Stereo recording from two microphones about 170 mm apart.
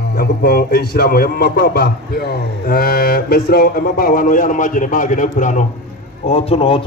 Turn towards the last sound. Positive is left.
turn(degrees=35)  # may be behind; listen again after turning